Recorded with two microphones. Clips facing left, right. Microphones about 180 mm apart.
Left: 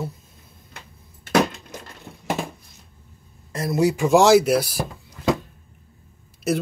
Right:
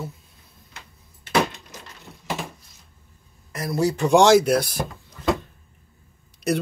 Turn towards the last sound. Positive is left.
turn(degrees=0)  # may be behind; listen again after turning